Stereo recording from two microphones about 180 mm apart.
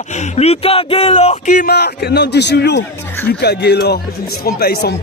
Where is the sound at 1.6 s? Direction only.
65° left (ahead or behind).